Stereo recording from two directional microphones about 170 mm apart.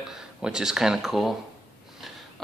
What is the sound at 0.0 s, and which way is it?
Speech, 5° right (ahead or behind).